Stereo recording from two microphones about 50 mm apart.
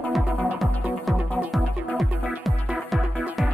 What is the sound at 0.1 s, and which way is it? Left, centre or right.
Music, centre.